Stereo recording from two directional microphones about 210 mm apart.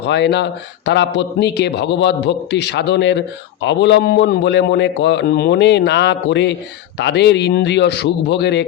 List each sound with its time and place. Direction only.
0.1 s a man's voice: 55° left (ahead or behind)